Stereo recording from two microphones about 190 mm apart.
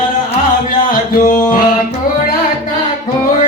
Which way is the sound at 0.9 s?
45° left (ahead or behind).